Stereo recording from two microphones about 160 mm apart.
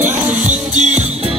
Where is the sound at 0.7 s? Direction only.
45° right (ahead or behind).